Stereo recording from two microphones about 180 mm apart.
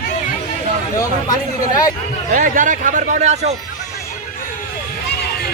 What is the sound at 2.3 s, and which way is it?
A man's voice, 45° right (ahead or behind).